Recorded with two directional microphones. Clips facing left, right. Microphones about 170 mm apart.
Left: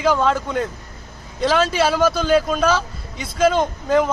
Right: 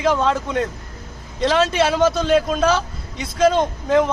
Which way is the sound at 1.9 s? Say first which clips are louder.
Right 1 dB; 25° right (ahead or behind).